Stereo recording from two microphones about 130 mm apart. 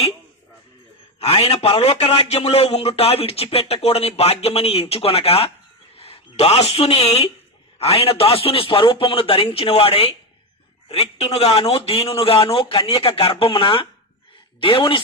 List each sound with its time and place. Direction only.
1.2 s a man's voice: 50° left (ahead or behind)